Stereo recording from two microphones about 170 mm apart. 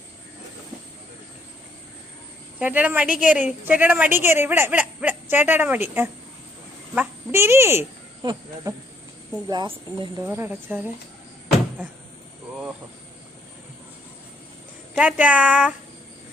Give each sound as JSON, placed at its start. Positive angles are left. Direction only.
{"t": 2.6, "sound": "a woman's voice", "side_deg": -10}
{"t": 8.2, "sound": "a woman's voice", "side_deg": -25}
{"t": 10.2, "sound": "a woman's voice", "side_deg": -15}
{"t": 14.9, "sound": "a woman's voice", "side_deg": -5}